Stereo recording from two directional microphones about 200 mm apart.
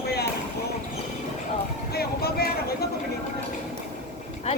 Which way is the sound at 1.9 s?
50° left (ahead or behind).